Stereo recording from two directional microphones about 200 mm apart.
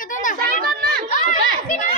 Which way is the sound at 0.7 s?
50° right (ahead or behind).